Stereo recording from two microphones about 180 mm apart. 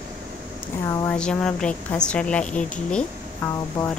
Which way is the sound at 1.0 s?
5° left (ahead or behind).